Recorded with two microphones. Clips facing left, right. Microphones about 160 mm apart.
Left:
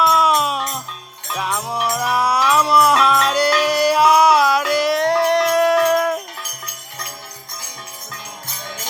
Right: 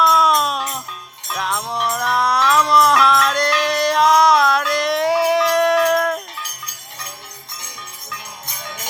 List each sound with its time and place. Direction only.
0.0 s music: 5° left (ahead or behind)